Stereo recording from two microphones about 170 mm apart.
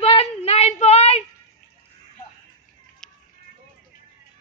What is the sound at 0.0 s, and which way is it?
Child singing, 35° left (ahead or behind).